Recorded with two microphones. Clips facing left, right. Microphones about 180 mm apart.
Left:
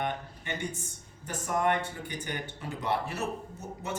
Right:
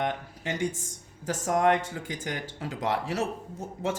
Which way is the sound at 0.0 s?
90° right.